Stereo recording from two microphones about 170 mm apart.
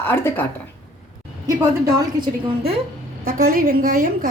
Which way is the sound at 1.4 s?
20° right (ahead or behind).